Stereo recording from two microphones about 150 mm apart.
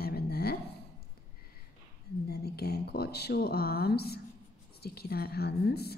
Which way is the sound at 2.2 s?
90° left.